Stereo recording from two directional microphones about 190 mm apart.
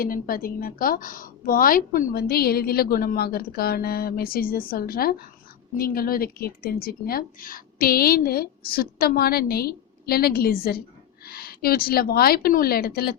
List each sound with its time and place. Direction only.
0.0 s a woman's voice: 50° left (ahead or behind)